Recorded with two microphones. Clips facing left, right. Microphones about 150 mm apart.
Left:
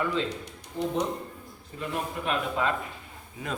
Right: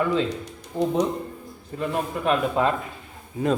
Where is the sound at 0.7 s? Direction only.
45° right (ahead or behind).